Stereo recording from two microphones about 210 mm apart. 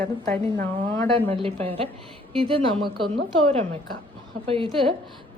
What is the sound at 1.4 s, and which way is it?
A woman's voice, 25° right (ahead or behind).